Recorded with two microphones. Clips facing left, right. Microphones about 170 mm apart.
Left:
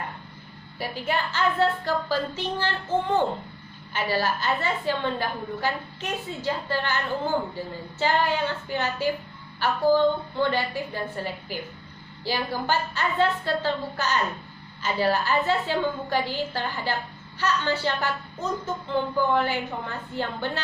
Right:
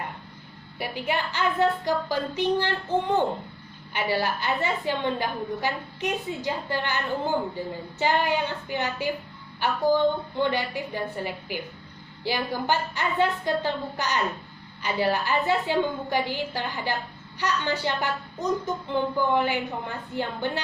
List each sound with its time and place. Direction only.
0.8 s a woman's voice: 15° right (ahead or behind)